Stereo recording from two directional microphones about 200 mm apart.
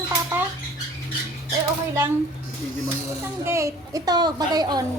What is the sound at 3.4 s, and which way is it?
A woman's voice, 15° right (ahead or behind).